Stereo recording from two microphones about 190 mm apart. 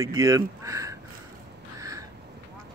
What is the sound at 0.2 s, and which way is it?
Speech, 15° right (ahead or behind).